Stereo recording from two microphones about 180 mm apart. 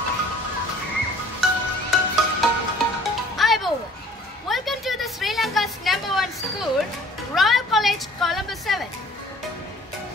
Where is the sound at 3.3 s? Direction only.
Centre (ahead or behind).